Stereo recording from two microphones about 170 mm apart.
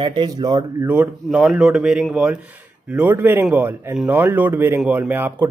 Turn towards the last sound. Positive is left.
turn(degrees=-10)  # may be behind; listen again after turning